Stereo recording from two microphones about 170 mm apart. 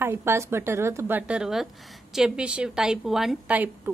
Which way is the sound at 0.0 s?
15° right (ahead or behind).